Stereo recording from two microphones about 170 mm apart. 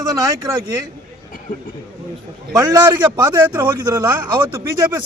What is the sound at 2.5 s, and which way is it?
Speech, 20° right (ahead or behind).